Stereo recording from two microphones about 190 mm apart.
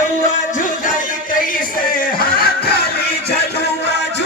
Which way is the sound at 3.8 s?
65° left (ahead or behind).